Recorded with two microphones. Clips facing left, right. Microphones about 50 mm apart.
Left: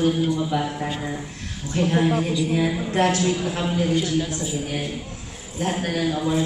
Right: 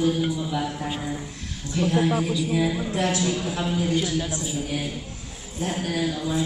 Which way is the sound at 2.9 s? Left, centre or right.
Left.